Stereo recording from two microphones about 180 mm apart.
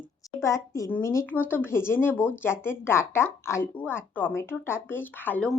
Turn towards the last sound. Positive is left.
turn(degrees=5)  # may be behind; listen again after turning